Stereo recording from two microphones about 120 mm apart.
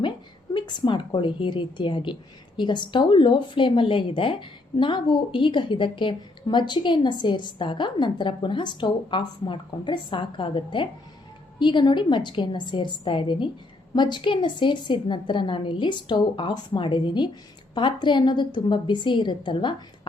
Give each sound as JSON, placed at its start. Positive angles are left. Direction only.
{"t": 0.5, "sound": "a woman's voice", "side_deg": 40}